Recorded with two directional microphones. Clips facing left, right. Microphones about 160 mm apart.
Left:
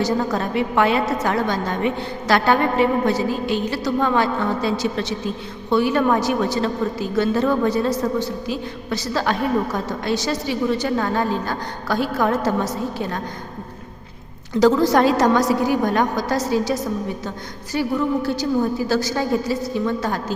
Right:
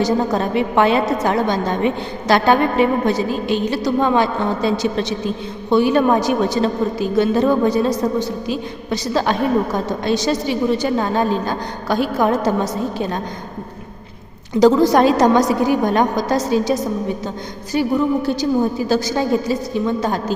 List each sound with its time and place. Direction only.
0.0 s a woman's voice: 20° right (ahead or behind)
14.6 s a woman's voice: 15° right (ahead or behind)